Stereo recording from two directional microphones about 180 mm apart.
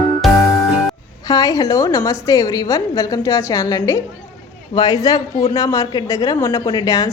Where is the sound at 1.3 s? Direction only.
20° left (ahead or behind).